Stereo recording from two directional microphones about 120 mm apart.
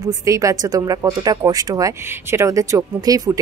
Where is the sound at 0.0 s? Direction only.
30° right (ahead or behind).